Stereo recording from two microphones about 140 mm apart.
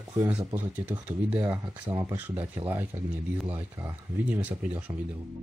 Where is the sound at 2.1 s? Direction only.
10° right (ahead or behind).